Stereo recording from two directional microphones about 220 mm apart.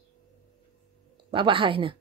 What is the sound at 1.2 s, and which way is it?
Speech, 25° right (ahead or behind).